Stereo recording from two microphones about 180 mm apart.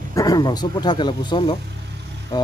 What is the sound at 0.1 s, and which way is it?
Speech, 20° left (ahead or behind).